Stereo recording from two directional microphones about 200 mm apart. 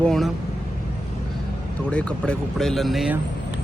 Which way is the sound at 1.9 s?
5° left (ahead or behind).